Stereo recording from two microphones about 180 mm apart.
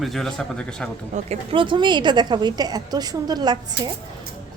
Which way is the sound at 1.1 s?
35° right (ahead or behind).